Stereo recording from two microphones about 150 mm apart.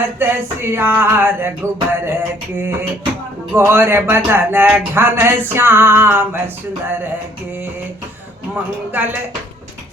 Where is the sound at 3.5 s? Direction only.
15° right (ahead or behind).